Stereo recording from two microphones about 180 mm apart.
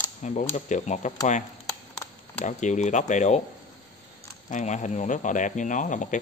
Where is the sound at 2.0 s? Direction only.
15° left (ahead or behind).